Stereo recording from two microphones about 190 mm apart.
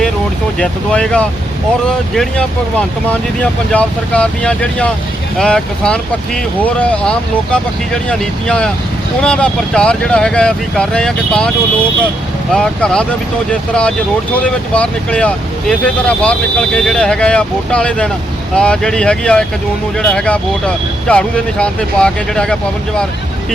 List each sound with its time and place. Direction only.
0.6 s speech: 5° left (ahead or behind)
12.5 s speech: 5° left (ahead or behind)